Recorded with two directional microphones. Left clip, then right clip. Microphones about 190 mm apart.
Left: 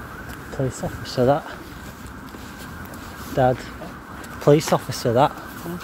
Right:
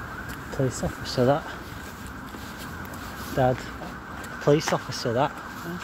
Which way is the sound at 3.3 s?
35° left (ahead or behind).